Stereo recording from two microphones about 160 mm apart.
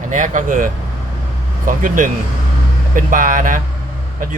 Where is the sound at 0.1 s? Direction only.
55° right (ahead or behind).